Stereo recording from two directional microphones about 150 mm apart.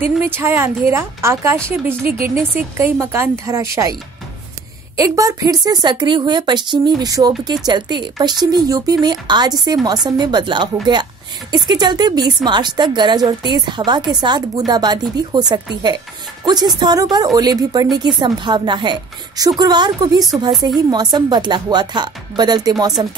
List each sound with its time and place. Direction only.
0.0 s a woman's voice: 15° right (ahead or behind)
4.9 s speech: 20° right (ahead or behind)